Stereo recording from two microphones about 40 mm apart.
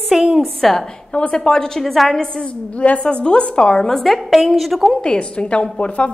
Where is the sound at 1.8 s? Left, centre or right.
Centre.